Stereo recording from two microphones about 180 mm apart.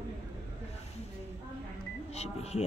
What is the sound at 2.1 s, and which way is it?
Speech, 35° left (ahead or behind).